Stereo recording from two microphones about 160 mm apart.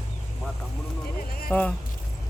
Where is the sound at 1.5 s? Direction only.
15° left (ahead or behind).